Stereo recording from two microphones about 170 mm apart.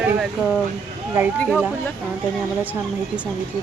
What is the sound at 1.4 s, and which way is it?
Speech, 10° left (ahead or behind).